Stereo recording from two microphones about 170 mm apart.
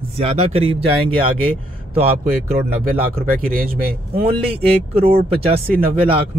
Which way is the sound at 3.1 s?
60° right (ahead or behind).